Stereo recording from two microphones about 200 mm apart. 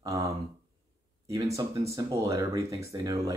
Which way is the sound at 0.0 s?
15° right (ahead or behind).